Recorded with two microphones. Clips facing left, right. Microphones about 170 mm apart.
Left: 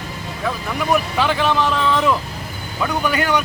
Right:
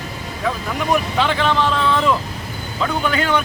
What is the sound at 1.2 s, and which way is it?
Speech, 10° left (ahead or behind).